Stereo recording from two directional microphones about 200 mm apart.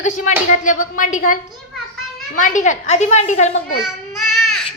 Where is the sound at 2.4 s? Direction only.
35° left (ahead or behind).